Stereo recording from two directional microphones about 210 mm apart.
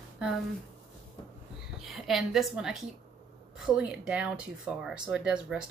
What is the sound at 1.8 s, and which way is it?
A woman's voice, centre (ahead or behind).